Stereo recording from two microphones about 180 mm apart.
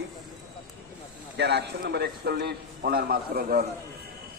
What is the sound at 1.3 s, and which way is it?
A man's voice, 65° right (ahead or behind).